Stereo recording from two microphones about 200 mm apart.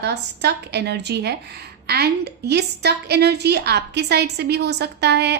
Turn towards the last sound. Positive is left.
turn(degrees=-55)  # may be behind; listen again after turning